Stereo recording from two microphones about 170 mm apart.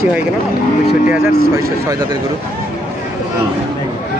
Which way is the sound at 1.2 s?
15° right (ahead or behind).